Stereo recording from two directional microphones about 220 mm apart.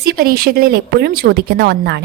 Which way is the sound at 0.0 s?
40° right (ahead or behind).